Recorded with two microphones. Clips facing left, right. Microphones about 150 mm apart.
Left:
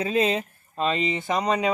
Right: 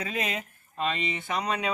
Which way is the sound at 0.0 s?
30° left (ahead or behind).